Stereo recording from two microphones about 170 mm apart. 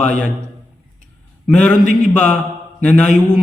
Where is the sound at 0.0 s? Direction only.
5° left (ahead or behind).